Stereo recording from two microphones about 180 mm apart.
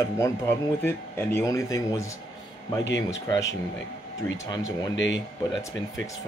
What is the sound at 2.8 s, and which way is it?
Speech, 85° left.